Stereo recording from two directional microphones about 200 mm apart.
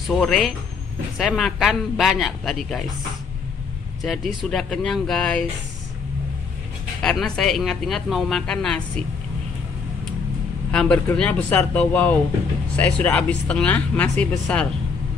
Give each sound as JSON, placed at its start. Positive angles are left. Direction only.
{"t": 0.1, "sound": "speech", "side_deg": 0}
{"t": 4.0, "sound": "speech", "side_deg": 0}
{"t": 7.0, "sound": "speech", "side_deg": 5}
{"t": 10.7, "sound": "speech", "side_deg": 5}